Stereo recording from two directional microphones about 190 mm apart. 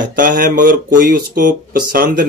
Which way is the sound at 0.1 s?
45° right (ahead or behind).